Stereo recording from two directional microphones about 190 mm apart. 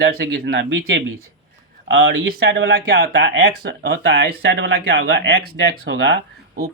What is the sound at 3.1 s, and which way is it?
Speech, 70° right (ahead or behind).